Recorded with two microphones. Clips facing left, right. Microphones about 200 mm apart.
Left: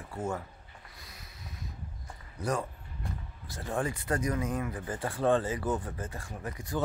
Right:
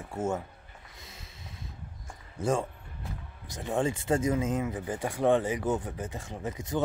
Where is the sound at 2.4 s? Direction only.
25° right (ahead or behind).